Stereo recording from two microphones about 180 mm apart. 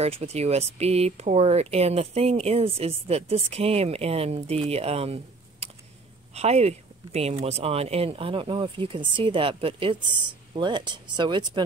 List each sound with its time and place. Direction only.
0.0 s speech: 35° right (ahead or behind)